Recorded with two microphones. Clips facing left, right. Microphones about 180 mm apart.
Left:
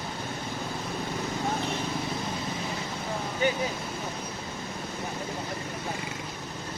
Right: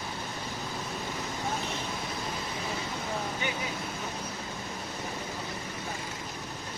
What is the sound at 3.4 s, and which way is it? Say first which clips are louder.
Speech: left 13 dB; 40° left (ahead or behind).